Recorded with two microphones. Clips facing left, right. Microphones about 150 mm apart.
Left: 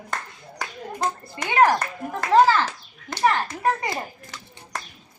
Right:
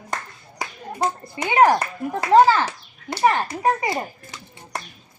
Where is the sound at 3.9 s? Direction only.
10° right (ahead or behind).